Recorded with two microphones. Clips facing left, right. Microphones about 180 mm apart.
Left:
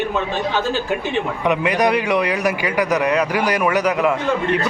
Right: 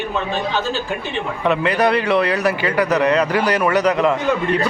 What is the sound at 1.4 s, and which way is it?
Speech, 15° left (ahead or behind).